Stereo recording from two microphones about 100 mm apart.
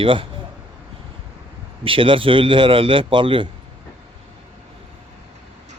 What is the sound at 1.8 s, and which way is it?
A man's voice, 60° right (ahead or behind).